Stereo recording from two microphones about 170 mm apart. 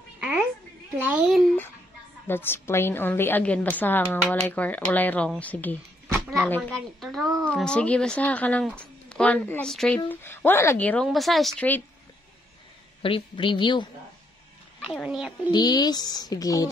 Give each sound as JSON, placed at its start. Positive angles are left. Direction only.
{"t": 0.9, "sound": "speech", "side_deg": -10}
{"t": 2.2, "sound": "speech", "side_deg": 15}
{"t": 13.0, "sound": "speech", "side_deg": 30}
{"t": 14.9, "sound": "speech", "side_deg": 0}
{"t": 15.5, "sound": "speech", "side_deg": 25}